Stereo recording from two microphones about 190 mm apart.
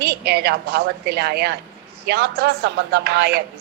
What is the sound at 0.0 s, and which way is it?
A woman's voice, 60° right (ahead or behind).